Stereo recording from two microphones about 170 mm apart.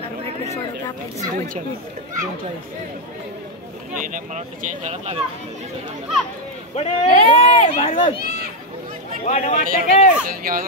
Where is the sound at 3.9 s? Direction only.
50° right (ahead or behind).